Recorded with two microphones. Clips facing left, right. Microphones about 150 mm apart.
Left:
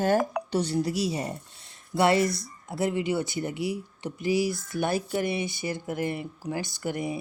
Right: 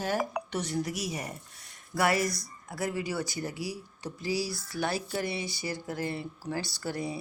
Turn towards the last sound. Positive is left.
turn(degrees=20)  # may be behind; listen again after turning